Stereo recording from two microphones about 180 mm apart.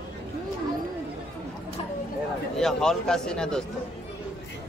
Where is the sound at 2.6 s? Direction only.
5° left (ahead or behind).